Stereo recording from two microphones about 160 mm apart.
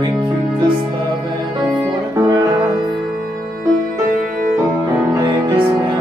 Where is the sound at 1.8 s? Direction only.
15° right (ahead or behind).